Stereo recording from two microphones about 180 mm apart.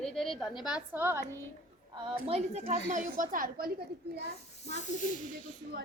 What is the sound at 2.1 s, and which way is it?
Speech, 35° right (ahead or behind).